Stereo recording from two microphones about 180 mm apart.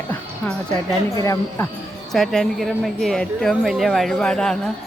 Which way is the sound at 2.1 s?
Centre (ahead or behind).